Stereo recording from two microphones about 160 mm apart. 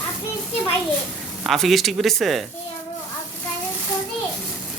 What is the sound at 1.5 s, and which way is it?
Speech, centre (ahead or behind).